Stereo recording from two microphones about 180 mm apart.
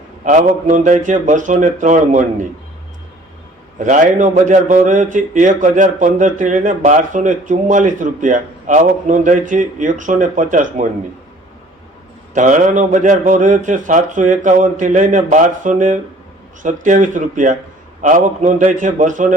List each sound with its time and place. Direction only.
0.3 s a man's voice: 45° right (ahead or behind)
3.8 s a man's voice: 45° right (ahead or behind)
12.3 s a man's voice: 45° right (ahead or behind)